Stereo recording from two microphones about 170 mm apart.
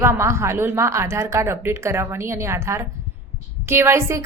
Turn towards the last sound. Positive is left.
turn(degrees=-15)  # may be behind; listen again after turning